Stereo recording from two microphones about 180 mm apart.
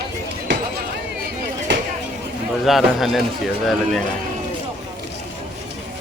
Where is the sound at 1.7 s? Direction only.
75° right (ahead or behind).